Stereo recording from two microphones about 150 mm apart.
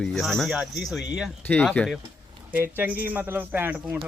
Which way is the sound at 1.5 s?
10° left (ahead or behind).